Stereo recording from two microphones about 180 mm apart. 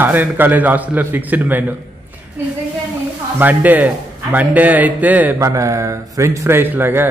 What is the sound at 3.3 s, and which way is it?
A man's voice, 10° right (ahead or behind).